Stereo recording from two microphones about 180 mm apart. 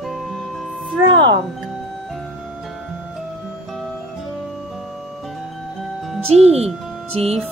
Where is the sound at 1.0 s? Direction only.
25° right (ahead or behind).